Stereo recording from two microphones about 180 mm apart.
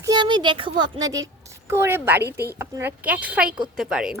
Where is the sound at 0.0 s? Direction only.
25° right (ahead or behind).